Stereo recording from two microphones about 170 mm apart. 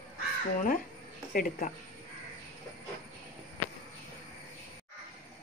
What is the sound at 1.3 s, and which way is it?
Speech, 50° left (ahead or behind).